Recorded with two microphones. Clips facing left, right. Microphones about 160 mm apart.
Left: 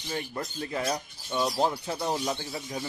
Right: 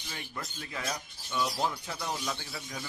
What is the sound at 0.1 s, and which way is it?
Speech, 40° left (ahead or behind).